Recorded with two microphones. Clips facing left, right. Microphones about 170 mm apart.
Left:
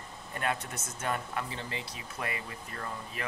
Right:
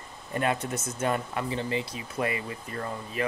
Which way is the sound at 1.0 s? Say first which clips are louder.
Right 5 dB; 20° right (ahead or behind).